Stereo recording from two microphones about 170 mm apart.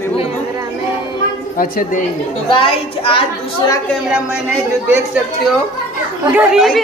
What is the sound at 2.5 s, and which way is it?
A woman's voice, 30° left (ahead or behind).